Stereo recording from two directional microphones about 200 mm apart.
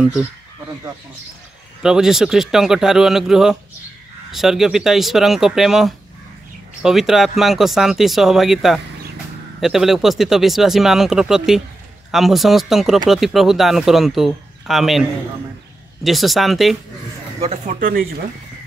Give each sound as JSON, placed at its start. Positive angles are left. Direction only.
{"t": 0.0, "sound": "speech", "side_deg": -5}
{"t": 1.8, "sound": "speech", "side_deg": -5}
{"t": 17.4, "sound": "speech", "side_deg": -35}